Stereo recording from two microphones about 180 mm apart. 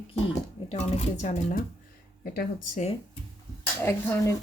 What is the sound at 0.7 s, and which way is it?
Speech, 35° left (ahead or behind).